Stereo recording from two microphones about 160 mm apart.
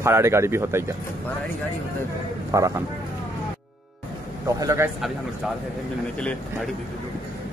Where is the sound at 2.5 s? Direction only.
20° right (ahead or behind).